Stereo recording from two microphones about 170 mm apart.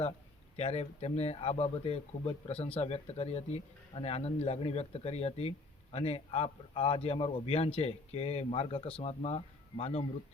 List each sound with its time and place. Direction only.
0.5 s speech: 40° left (ahead or behind)